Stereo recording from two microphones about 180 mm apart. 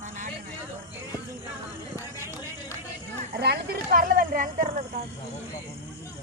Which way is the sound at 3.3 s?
65° right (ahead or behind).